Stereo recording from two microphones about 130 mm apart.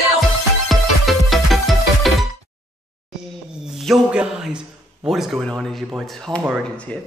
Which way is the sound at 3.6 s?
Centre (ahead or behind).